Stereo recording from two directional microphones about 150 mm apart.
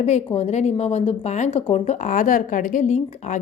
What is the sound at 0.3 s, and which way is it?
A woman's voice, 50° left (ahead or behind).